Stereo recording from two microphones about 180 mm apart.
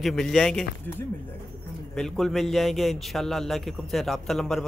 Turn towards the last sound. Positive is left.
turn(degrees=0)  # may be behind; listen again after turning